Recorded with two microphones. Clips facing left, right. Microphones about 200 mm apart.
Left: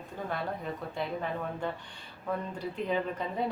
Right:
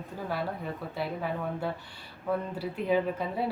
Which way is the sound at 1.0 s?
5° right (ahead or behind).